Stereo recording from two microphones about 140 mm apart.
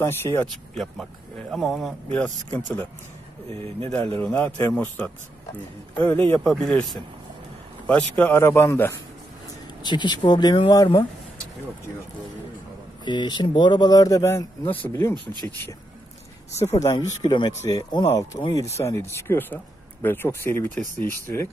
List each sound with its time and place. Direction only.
0.0 s speech: 20° left (ahead or behind)
1.5 s speech: centre (ahead or behind)
2.5 s speech: 15° left (ahead or behind)
3.4 s speech: 45° right (ahead or behind)
4.2 s speech: 10° left (ahead or behind)
6.4 s speech: centre (ahead or behind); by 8.9 s 15° left (ahead or behind)
9.8 s speech: 35° left (ahead or behind)
13.0 s speech: 35° left (ahead or behind); by 15.7 s 20° left (ahead or behind)
16.8 s speech: 30° left (ahead or behind)